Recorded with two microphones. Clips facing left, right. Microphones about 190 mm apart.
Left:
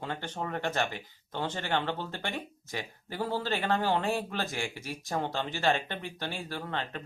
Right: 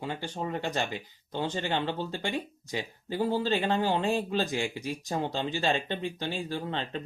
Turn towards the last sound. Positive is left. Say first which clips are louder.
# right 3 dB
turn(degrees=-20)  # may be behind; listen again after turning